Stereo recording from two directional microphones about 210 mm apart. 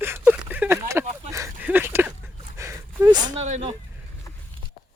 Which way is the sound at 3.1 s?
20° right (ahead or behind).